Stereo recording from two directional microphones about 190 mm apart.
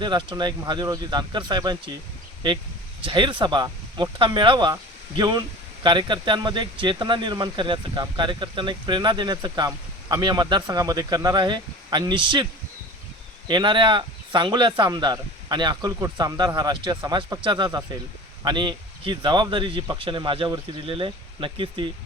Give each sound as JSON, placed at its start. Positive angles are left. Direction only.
{"t": 0.0, "sound": "speech", "side_deg": -25}
{"t": 3.0, "sound": "speech", "side_deg": -25}
{"t": 13.5, "sound": "speech", "side_deg": -25}